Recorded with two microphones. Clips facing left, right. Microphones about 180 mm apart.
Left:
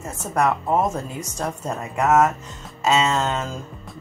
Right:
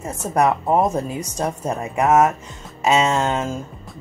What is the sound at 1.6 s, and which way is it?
Speech, 15° right (ahead or behind).